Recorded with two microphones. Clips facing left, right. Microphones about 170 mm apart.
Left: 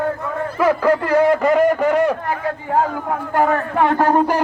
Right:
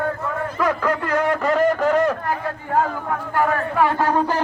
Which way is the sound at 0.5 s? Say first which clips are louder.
Left 7 dB; 10° left (ahead or behind).